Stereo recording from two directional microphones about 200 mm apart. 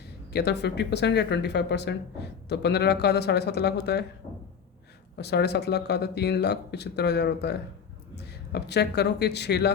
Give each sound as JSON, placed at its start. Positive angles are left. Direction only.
{"t": 0.3, "sound": "speech", "side_deg": 60}
{"t": 5.1, "sound": "speech", "side_deg": 55}